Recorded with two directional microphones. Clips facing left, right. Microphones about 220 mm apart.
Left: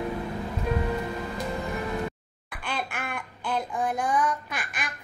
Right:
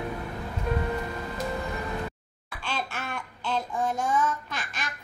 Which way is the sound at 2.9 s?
15° left (ahead or behind).